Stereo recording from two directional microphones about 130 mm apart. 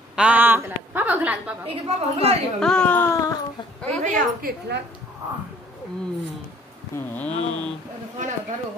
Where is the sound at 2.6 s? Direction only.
5° left (ahead or behind); by 3.3 s 25° left (ahead or behind).